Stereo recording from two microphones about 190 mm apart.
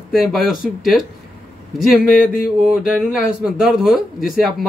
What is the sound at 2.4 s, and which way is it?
Speech, 5° right (ahead or behind).